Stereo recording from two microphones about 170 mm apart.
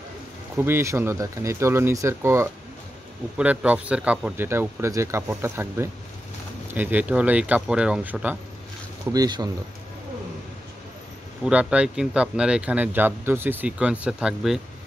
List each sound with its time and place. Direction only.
0.6 s speech: 15° right (ahead or behind)
9.1 s speech: 20° right (ahead or behind)
11.4 s speech: 5° right (ahead or behind)